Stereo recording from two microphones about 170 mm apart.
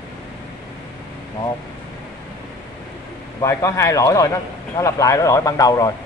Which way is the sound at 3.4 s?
15° left (ahead or behind).